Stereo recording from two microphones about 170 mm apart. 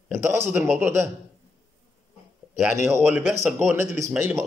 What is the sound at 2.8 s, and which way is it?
Speech, 10° right (ahead or behind).